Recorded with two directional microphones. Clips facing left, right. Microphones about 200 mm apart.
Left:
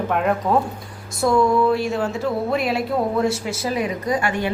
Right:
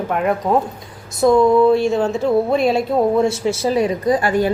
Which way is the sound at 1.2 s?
20° right (ahead or behind).